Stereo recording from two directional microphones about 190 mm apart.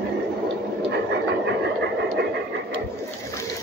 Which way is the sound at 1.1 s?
65° right (ahead or behind).